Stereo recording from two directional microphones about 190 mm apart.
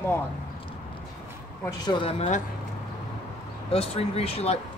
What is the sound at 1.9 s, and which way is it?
Speech, 30° left (ahead or behind).